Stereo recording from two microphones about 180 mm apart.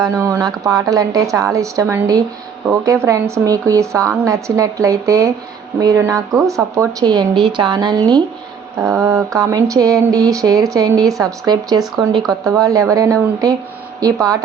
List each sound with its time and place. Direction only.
0.0 s a woman's voice: 15° right (ahead or behind)